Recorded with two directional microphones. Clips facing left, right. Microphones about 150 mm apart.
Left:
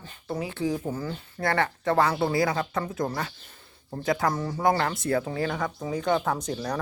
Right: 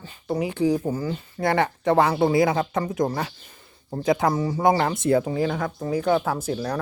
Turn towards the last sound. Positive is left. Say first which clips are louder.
# right 3 dB
turn(degrees=-5)  # may be behind; listen again after turning